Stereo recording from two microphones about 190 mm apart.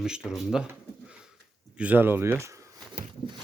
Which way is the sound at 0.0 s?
5° right (ahead or behind).